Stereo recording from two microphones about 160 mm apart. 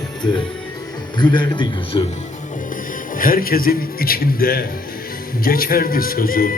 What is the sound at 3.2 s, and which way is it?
A man's voice, 65° left (ahead or behind).